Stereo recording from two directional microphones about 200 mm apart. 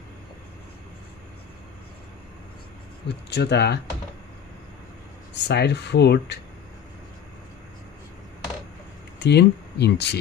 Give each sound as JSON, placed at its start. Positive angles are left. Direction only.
{"t": 3.1, "sound": "speech", "side_deg": 60}
{"t": 5.5, "sound": "speech", "side_deg": 55}
{"t": 9.2, "sound": "speech", "side_deg": 55}